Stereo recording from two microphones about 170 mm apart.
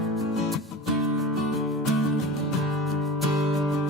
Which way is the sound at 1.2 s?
Centre (ahead or behind).